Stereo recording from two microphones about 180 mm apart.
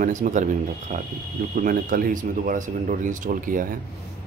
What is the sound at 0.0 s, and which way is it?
A man's voice, 45° right (ahead or behind).